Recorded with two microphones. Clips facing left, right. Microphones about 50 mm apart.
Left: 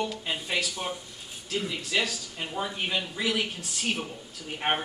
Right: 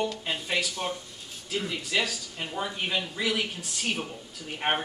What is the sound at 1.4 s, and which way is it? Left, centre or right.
Speech, centre.